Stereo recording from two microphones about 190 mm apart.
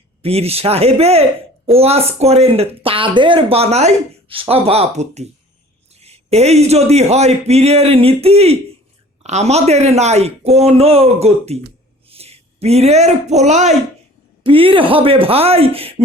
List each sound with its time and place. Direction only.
0.2 s speech: 30° right (ahead or behind)